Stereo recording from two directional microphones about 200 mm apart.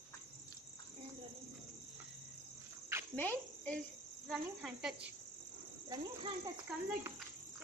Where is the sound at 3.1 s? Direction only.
10° left (ahead or behind).